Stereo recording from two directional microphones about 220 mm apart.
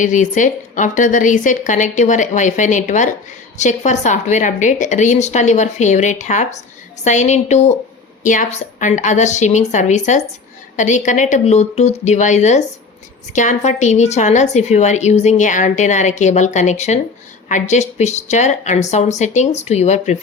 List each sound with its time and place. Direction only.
0.0 s a woman's voice: 35° left (ahead or behind)